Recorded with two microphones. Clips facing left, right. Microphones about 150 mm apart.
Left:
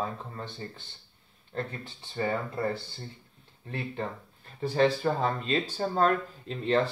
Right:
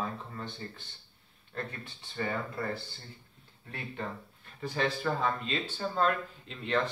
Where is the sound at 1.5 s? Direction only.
30° left (ahead or behind).